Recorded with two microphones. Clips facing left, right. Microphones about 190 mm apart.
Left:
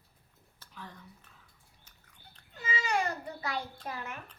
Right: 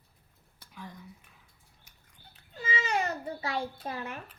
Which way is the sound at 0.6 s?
10° right (ahead or behind).